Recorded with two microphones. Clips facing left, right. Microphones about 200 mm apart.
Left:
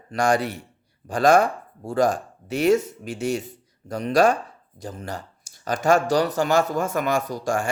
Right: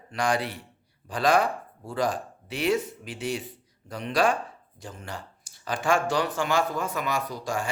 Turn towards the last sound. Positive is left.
turn(degrees=50)  # may be behind; listen again after turning